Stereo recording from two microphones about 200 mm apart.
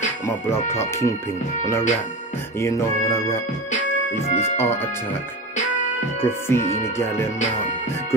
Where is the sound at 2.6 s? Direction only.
15° left (ahead or behind).